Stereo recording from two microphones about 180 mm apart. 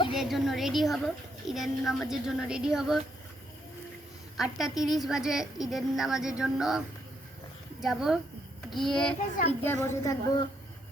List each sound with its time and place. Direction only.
0.1 s a woman's voice: centre (ahead or behind)
4.4 s a woman's voice: centre (ahead or behind)
9.8 s a woman's voice: 15° left (ahead or behind)